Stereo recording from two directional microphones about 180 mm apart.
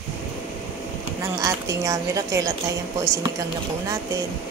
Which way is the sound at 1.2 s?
20° right (ahead or behind).